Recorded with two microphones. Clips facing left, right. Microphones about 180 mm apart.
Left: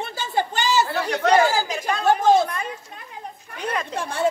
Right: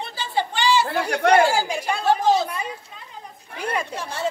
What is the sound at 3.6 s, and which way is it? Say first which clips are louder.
Speech: right 1 dB; 10° right (ahead or behind).